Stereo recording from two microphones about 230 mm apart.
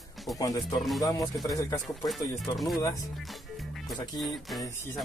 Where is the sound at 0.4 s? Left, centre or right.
Centre.